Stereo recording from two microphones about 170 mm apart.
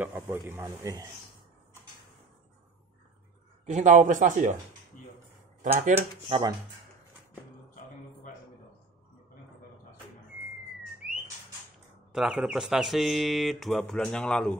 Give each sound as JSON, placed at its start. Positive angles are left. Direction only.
{"t": 0.0, "sound": "a man's voice", "side_deg": -10}
{"t": 3.6, "sound": "speech", "side_deg": -45}
{"t": 5.6, "sound": "speech", "side_deg": -45}
{"t": 6.2, "sound": "speech", "side_deg": -35}
{"t": 12.1, "sound": "speech", "side_deg": -5}